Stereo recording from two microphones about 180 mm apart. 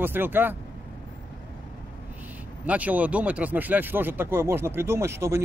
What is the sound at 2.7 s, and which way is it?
Speech, 10° right (ahead or behind).